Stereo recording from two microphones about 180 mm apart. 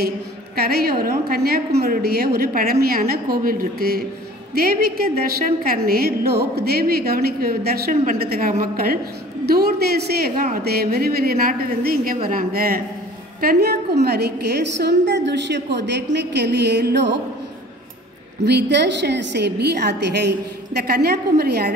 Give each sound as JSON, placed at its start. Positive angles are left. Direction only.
{"t": 0.6, "sound": "a woman's voice", "side_deg": -60}
{"t": 18.4, "sound": "a woman's voice", "side_deg": -70}